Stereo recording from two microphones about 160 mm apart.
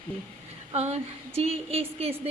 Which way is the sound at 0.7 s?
40° right (ahead or behind).